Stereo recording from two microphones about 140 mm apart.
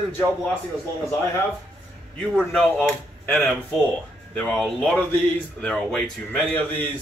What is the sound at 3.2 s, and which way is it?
A man's voice, 5° left (ahead or behind).